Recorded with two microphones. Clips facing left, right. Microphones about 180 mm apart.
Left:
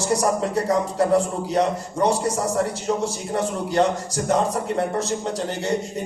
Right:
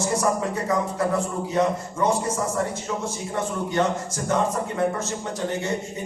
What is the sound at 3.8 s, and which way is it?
Speech, 35° left (ahead or behind).